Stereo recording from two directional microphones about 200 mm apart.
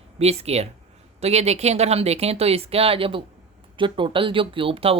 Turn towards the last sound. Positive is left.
turn(degrees=-30)  # may be behind; listen again after turning